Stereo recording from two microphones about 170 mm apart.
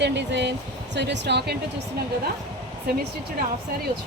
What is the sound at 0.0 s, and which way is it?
Speech, 90° right.